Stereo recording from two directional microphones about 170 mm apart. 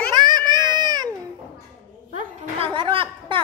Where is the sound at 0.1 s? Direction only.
25° right (ahead or behind).